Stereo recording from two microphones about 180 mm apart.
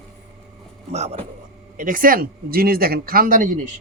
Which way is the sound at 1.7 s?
50° right (ahead or behind).